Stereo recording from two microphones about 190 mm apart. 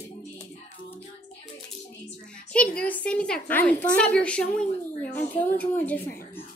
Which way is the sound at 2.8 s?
5° left (ahead or behind).